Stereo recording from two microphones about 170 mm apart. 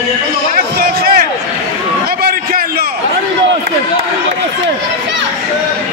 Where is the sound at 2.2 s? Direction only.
65° right (ahead or behind).